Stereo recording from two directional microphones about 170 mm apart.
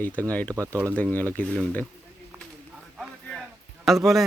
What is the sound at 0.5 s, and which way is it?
Speech, 20° right (ahead or behind).